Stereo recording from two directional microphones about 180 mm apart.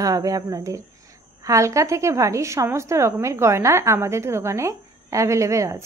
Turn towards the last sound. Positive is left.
turn(degrees=-15)  # may be behind; listen again after turning